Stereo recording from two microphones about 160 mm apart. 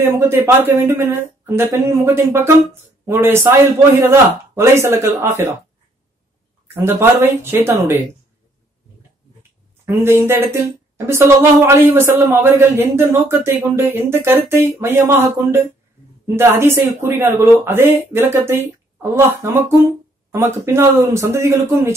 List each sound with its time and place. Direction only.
0.0 s a man's voice: 15° right (ahead or behind)
6.7 s a man's voice: 15° right (ahead or behind)
9.8 s a man's voice: 15° right (ahead or behind)